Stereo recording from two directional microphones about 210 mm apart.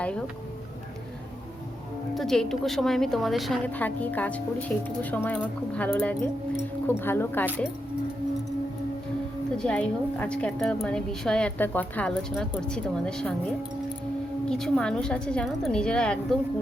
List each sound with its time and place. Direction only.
2.1 s a woman's voice: centre (ahead or behind)
9.6 s a woman's voice: 5° left (ahead or behind)
14.5 s a woman's voice: 5° left (ahead or behind)